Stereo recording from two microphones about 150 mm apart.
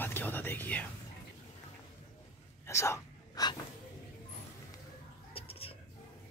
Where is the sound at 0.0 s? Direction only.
15° left (ahead or behind).